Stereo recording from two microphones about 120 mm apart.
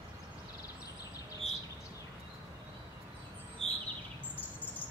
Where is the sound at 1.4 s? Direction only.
65° left (ahead or behind).